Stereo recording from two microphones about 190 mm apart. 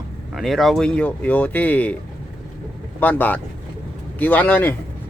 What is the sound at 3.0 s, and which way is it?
Speech, 10° left (ahead or behind).